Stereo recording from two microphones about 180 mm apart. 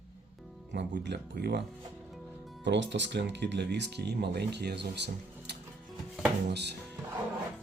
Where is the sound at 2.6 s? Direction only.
80° right.